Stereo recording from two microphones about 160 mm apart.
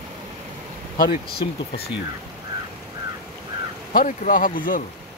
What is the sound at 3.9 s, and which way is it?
Speech, 60° left (ahead or behind).